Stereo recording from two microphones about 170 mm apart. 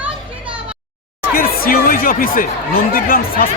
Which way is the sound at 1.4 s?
60° left (ahead or behind).